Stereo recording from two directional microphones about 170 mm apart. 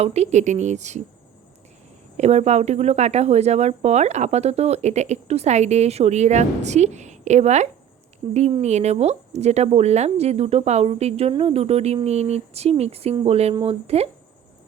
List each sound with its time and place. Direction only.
0.0 s speech: 40° right (ahead or behind)
2.1 s speech: 40° right (ahead or behind)